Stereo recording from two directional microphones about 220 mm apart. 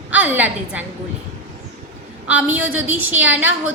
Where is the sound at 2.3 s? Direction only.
10° right (ahead or behind).